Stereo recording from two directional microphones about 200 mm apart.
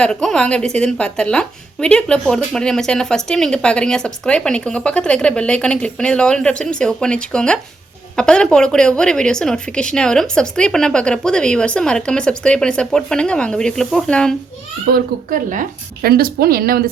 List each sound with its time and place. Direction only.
0.0 s a woman's voice: 5° left (ahead or behind)
15.3 s a woman's voice: 40° right (ahead or behind)